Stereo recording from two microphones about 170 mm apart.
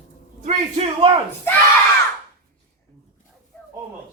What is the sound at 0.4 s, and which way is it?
Speech, 40° right (ahead or behind).